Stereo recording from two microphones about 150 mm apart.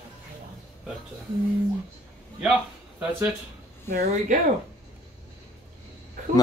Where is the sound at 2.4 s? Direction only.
5° right (ahead or behind).